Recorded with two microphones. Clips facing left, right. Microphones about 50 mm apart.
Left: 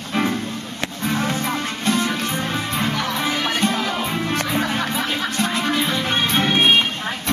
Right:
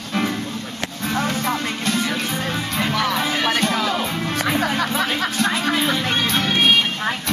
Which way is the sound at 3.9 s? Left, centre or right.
Centre.